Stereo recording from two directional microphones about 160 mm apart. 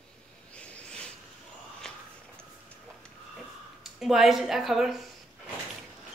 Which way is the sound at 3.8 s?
Centre (ahead or behind).